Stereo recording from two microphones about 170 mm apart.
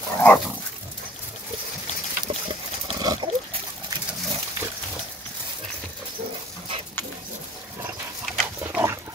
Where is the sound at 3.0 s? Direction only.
25° right (ahead or behind).